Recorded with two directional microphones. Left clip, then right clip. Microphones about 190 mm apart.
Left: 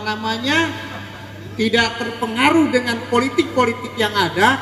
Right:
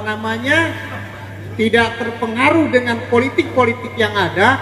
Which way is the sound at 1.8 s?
45° left (ahead or behind).